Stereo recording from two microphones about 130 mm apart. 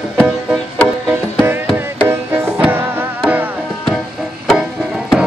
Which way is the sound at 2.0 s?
20° right (ahead or behind).